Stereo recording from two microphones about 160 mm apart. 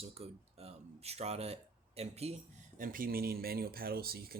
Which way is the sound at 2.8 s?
60° right (ahead or behind).